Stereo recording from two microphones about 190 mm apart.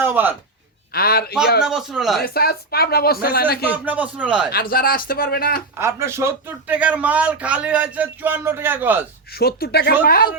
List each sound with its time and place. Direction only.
0.0 s a man's voice: 10° right (ahead or behind)
0.9 s speech: 55° left (ahead or behind)
1.6 s a man's voice: centre (ahead or behind)
2.2 s speech: 55° left (ahead or behind)
3.7 s speech: 10° right (ahead or behind)
4.5 s speech: 50° left (ahead or behind)
5.7 s speech: 15° right (ahead or behind)
9.3 s speech: 55° left (ahead or behind)